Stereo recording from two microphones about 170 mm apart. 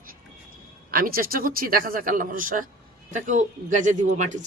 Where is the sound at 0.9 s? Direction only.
55° right (ahead or behind).